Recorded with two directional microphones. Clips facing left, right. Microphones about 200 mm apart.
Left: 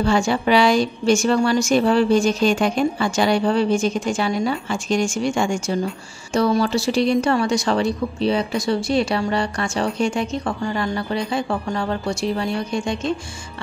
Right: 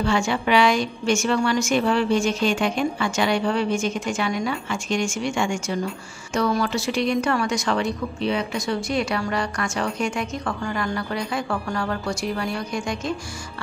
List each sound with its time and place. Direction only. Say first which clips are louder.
0.0 s a woman's voice: left 4 dB; 35° left (ahead or behind)